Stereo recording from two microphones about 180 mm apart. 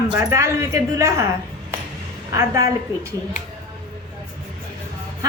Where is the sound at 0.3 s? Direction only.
15° right (ahead or behind).